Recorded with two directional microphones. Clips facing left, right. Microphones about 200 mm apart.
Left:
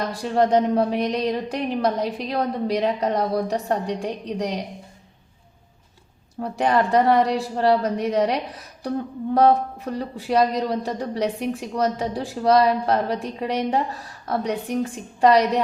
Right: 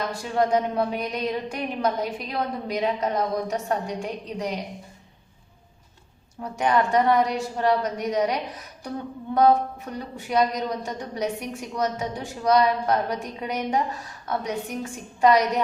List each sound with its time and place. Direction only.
0.0 s a woman's voice: 35° left (ahead or behind)
6.4 s a woman's voice: 35° left (ahead or behind)